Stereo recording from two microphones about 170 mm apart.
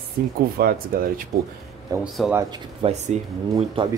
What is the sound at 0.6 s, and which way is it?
Speech, 55° right (ahead or behind).